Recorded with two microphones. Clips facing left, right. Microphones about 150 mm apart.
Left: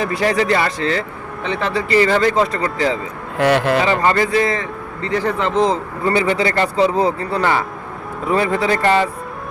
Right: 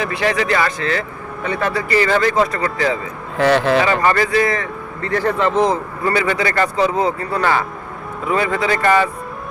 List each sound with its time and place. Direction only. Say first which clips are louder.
0.0 s a man's voice: left 2 dB; 40° left (ahead or behind)
3.3 s a man's voice: right 1 dB; 10° left (ahead or behind)
4.0 s a man's voice: even; 25° left (ahead or behind)